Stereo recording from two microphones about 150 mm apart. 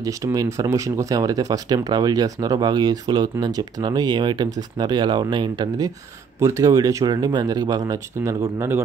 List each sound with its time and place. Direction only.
0.0 s speech: 20° right (ahead or behind)